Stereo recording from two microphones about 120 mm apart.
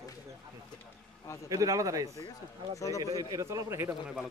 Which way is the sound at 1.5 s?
30° right (ahead or behind).